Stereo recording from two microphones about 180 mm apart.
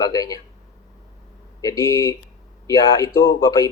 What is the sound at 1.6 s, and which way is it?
Speech, 20° left (ahead or behind).